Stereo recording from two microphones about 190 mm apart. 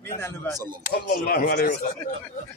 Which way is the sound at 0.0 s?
15° left (ahead or behind).